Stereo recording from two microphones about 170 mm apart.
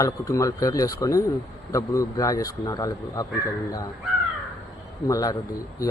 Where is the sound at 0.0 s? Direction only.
20° left (ahead or behind).